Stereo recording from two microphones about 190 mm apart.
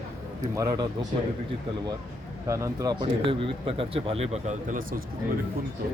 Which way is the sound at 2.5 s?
20° right (ahead or behind).